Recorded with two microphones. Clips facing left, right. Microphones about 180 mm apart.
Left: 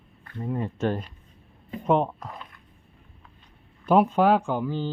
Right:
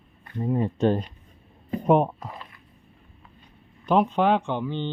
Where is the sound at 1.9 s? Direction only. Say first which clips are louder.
Right 3 dB; 15° right (ahead or behind).